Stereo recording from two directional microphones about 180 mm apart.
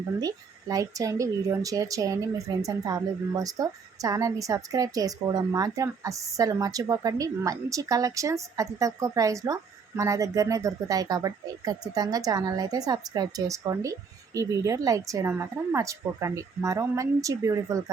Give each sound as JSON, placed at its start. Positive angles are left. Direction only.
{"t": 0.2, "sound": "a woman's voice", "side_deg": -20}